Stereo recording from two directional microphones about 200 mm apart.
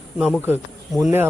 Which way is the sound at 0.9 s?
Centre (ahead or behind).